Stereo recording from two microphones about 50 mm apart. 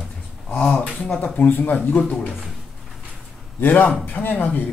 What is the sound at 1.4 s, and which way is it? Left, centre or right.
Speech, left.